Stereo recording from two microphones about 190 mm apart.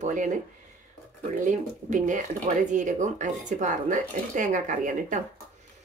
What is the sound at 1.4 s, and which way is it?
Speech, 40° right (ahead or behind).